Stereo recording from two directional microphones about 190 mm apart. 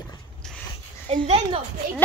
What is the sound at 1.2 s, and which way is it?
Speech, 35° right (ahead or behind).